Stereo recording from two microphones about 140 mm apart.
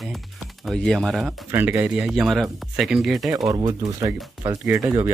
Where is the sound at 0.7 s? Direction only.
Centre (ahead or behind).